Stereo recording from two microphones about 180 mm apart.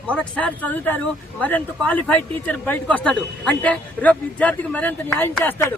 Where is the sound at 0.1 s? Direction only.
5° left (ahead or behind).